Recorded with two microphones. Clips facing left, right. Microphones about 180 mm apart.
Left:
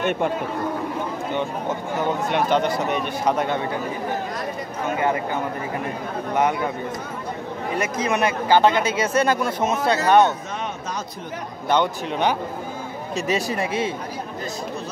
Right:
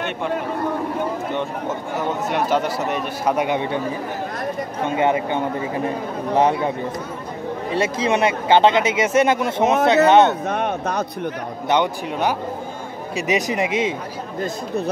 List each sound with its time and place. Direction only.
2.3 s speech: 5° right (ahead or behind)
4.8 s speech: 25° right (ahead or behind)
7.7 s speech: 30° right (ahead or behind)
10.5 s speech: 60° right (ahead or behind)
11.7 s a man's voice: 10° right (ahead or behind)